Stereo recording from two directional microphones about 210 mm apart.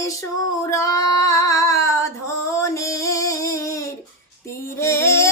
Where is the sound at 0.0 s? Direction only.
15° left (ahead or behind).